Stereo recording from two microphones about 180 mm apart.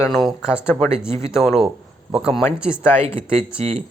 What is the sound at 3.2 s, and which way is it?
Speech, 35° right (ahead or behind).